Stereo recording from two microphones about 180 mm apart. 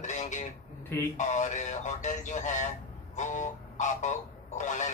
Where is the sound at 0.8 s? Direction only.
10° left (ahead or behind).